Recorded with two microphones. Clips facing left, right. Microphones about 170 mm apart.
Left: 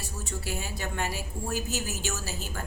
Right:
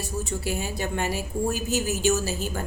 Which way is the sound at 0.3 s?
20° right (ahead or behind).